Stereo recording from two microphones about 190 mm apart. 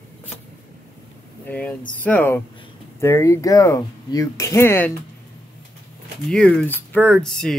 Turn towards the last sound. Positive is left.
turn(degrees=0)  # may be behind; listen again after turning